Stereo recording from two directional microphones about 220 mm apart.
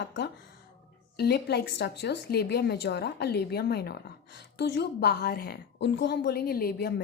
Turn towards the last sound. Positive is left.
turn(degrees=45)  # may be behind; listen again after turning